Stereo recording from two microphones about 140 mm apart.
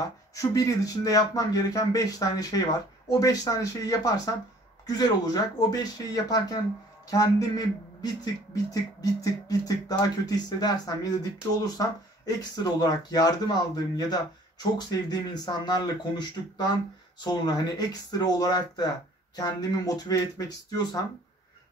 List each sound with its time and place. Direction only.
0.3 s speech: 25° left (ahead or behind)
12.4 s speech: 30° left (ahead or behind)